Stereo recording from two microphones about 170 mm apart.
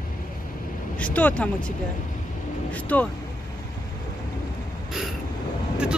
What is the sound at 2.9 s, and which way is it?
Speech, 10° left (ahead or behind).